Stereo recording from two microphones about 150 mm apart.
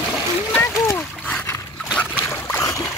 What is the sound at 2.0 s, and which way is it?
Trickle, 10° left (ahead or behind).